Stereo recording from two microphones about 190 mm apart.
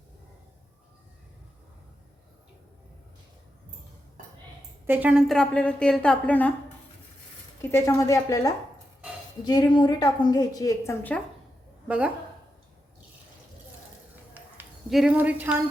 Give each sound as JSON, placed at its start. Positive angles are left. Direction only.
{"t": 4.9, "sound": "a woman's voice", "side_deg": -5}
{"t": 7.6, "sound": "a woman's voice", "side_deg": 15}
{"t": 11.9, "sound": "a woman's voice", "side_deg": -5}
{"t": 14.3, "sound": "a sound", "side_deg": -5}